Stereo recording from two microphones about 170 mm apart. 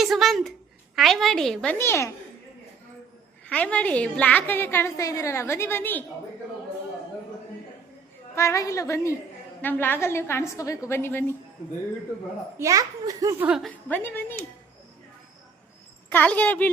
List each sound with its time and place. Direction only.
0.0 s a sound: centre (ahead or behind)
0.9 s a woman's voice: centre (ahead or behind)
1.8 s a woman's voice: 15° left (ahead or behind)
3.4 s a woman's voice: 5° left (ahead or behind)
8.4 s a woman's voice: 15° left (ahead or behind)
12.5 s a child's voice: 20° right (ahead or behind)
13.4 s a woman's voice: 5° right (ahead or behind)
13.7 s a woman's voice: 10° left (ahead or behind)
16.0 s a woman's voice: 10° left (ahead or behind)